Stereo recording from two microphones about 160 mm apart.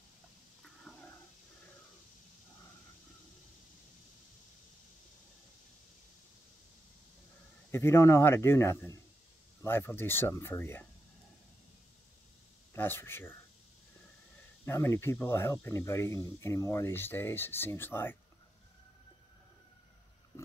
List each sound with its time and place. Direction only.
0.9 s a sound: centre (ahead or behind)
7.7 s speech: 15° left (ahead or behind)
12.7 s speech: 15° left (ahead or behind)
14.6 s speech: 15° left (ahead or behind)